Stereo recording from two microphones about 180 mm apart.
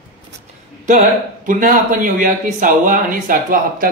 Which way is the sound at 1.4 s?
50° right (ahead or behind).